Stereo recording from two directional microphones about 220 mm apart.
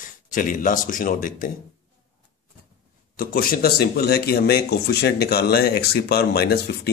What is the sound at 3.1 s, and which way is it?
Speech, 40° left (ahead or behind).